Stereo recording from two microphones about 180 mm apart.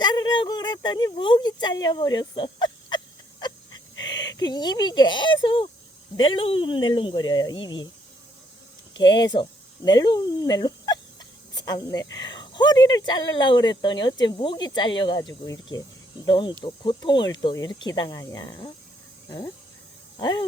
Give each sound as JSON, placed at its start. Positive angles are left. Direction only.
{"t": 0.0, "sound": "a sound", "side_deg": 25}
{"t": 4.0, "sound": "speech", "side_deg": 20}
{"t": 9.0, "sound": "speech", "side_deg": 25}
{"t": 20.1, "sound": "speech", "side_deg": 25}